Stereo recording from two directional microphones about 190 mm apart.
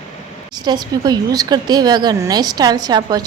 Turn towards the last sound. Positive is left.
turn(degrees=-20)  # may be behind; listen again after turning